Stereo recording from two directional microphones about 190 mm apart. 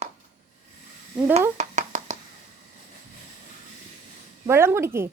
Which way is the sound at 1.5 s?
40° right (ahead or behind).